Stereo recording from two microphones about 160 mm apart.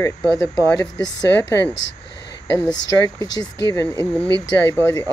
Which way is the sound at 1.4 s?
15° left (ahead or behind).